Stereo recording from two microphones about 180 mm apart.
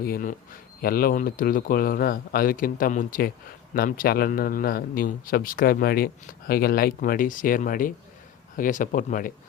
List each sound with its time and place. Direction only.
0.0 s speech: 50° left (ahead or behind)